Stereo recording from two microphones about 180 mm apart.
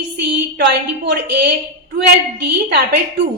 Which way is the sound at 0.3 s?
70° right (ahead or behind).